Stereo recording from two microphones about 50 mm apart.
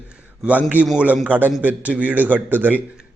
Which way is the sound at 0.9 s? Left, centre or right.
Right.